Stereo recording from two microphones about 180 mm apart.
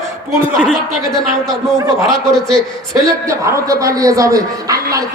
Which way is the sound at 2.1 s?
Centre (ahead or behind).